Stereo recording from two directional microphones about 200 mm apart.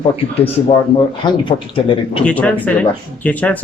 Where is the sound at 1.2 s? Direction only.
20° left (ahead or behind).